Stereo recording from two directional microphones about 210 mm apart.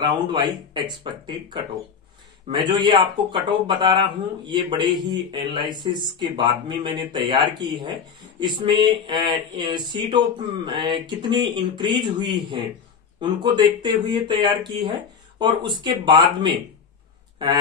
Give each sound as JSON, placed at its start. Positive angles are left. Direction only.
{"t": 0.0, "sound": "speech", "side_deg": -20}
{"t": 15.3, "sound": "speech", "side_deg": -20}